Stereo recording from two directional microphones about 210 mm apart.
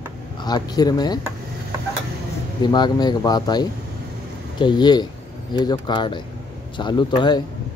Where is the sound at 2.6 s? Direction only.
20° left (ahead or behind).